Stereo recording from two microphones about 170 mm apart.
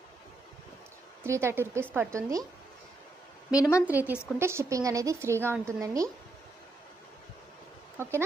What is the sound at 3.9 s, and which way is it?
A woman's voice, 10° right (ahead or behind).